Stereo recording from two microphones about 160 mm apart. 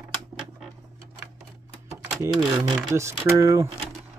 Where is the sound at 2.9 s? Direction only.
15° right (ahead or behind).